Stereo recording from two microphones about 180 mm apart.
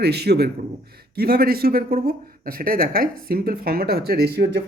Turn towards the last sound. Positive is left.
turn(degrees=-65)  # may be behind; listen again after turning